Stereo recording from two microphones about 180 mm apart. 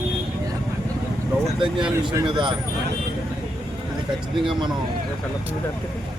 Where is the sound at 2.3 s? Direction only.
25° right (ahead or behind).